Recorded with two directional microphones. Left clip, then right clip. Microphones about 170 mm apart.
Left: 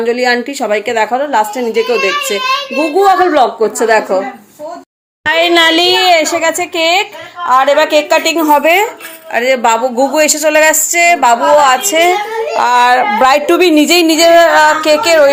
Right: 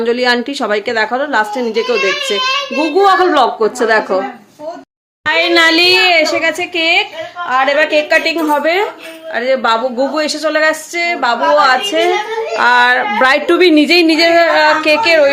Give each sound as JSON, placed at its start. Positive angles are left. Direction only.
{"t": 0.0, "sound": "speech", "side_deg": -10}
{"t": 5.2, "sound": "a woman's voice", "side_deg": 20}